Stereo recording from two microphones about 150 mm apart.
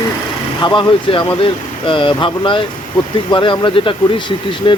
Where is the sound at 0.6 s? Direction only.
30° left (ahead or behind).